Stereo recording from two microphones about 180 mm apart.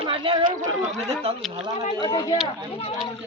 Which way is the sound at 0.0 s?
30° right (ahead or behind).